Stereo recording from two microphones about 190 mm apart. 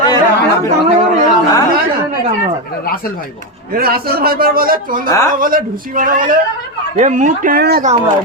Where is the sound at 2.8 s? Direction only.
50° left (ahead or behind).